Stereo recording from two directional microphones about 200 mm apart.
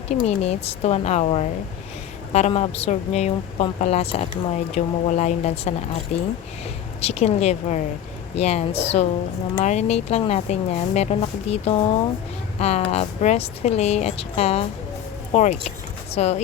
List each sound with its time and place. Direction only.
0.1 s speech: 30° left (ahead or behind)
7.0 s speech: 35° left (ahead or behind)